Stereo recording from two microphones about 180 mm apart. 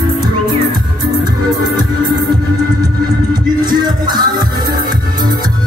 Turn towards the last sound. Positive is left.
turn(degrees=-25)  # may be behind; listen again after turning